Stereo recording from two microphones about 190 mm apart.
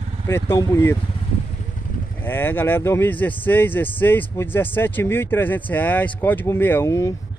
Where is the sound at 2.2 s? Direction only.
10° left (ahead or behind).